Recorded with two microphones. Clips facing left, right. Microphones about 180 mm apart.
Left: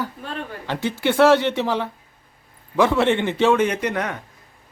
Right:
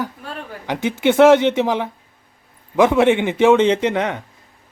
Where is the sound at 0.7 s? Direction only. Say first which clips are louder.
Right 5 dB; 20° right (ahead or behind).